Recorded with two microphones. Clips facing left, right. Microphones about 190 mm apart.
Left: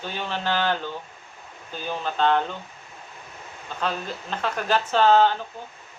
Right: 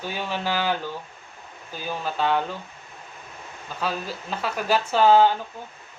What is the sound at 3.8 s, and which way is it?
Speech, 5° right (ahead or behind).